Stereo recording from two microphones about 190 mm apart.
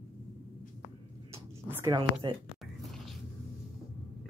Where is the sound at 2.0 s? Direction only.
25° right (ahead or behind).